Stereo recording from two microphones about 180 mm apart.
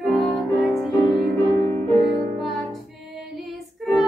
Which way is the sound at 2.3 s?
Centre (ahead or behind).